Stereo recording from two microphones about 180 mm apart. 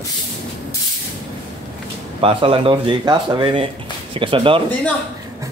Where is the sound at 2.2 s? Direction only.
30° right (ahead or behind).